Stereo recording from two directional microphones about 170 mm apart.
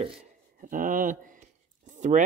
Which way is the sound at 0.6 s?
50° right (ahead or behind).